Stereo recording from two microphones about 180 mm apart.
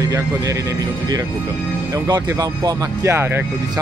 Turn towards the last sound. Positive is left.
turn(degrees=-15)  # may be behind; listen again after turning